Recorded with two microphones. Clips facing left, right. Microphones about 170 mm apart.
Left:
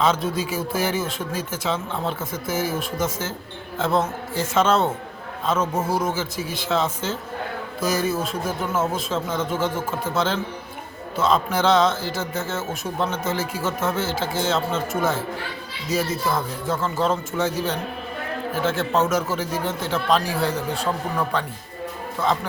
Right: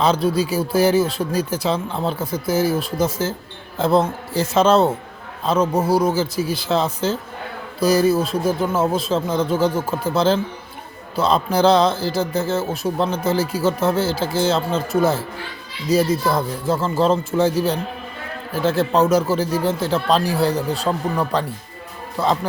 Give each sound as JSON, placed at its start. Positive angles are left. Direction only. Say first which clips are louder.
{"t": 0.0, "sound": "a man's voice", "louder": "right 4 dB", "side_deg": -35}
{"t": 11.2, "sound": "a man's voice", "louder": "right 4 dB", "side_deg": -35}